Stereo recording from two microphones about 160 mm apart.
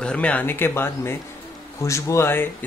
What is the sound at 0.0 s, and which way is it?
Speech, 5° left (ahead or behind).